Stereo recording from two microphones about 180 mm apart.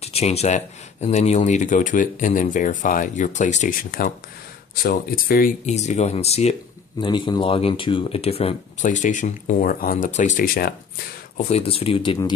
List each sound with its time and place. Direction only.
0.0 s speech: 35° left (ahead or behind)
7.0 s speech: 25° left (ahead or behind); by 10.7 s 55° left (ahead or behind)
11.3 s speech: 35° left (ahead or behind)